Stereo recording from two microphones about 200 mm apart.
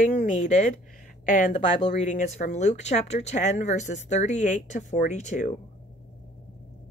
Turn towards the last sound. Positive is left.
turn(degrees=35)  # may be behind; listen again after turning